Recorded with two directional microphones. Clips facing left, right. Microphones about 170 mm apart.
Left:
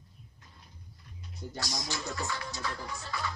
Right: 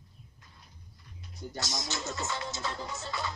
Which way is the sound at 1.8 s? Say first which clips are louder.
Even; 25° right (ahead or behind).